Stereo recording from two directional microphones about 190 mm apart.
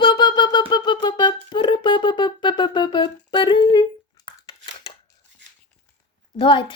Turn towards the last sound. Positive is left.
turn(degrees=25)  # may be behind; listen again after turning